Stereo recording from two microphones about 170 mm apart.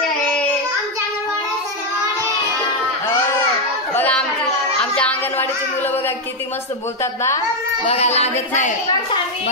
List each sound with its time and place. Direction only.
3.9 s children playing: 10° left (ahead or behind)
4.9 s music: 5° left (ahead or behind)
7.0 s speech: 15° left (ahead or behind)
7.8 s music: 40° left (ahead or behind)